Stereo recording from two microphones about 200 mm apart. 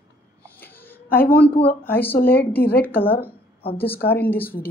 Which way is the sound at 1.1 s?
10° left (ahead or behind).